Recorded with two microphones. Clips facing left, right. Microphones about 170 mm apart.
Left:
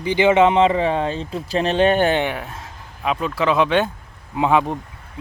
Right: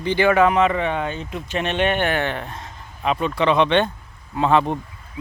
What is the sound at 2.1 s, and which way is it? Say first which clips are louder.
Speech: left 3 dB; 15° left (ahead or behind).